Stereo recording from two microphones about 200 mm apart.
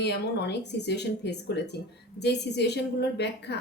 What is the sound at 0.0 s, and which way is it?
Speech, 60° left (ahead or behind).